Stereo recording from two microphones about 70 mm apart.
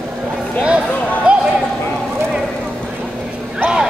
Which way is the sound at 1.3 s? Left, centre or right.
Centre.